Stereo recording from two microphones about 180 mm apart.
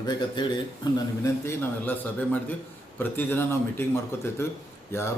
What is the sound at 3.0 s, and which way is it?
Speech, 10° left (ahead or behind).